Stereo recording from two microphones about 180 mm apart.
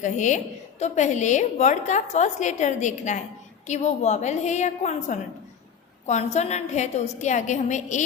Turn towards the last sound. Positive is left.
turn(degrees=40)  # may be behind; listen again after turning